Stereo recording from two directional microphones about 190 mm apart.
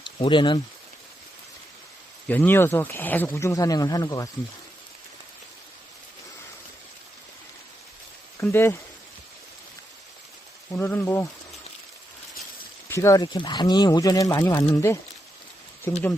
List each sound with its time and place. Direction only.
0.0 s speech: 25° left (ahead or behind)
2.2 s speech: 10° left (ahead or behind)
8.4 s speech: 15° left (ahead or behind)
10.7 s speech: 10° left (ahead or behind)
12.9 s speech: 15° left (ahead or behind)